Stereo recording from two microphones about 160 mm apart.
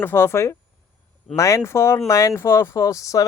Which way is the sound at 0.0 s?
15° left (ahead or behind).